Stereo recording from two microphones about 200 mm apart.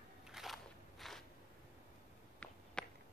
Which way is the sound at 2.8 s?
5° left (ahead or behind).